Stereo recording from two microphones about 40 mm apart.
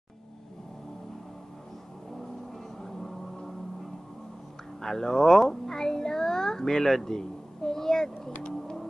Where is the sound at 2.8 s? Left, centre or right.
Centre.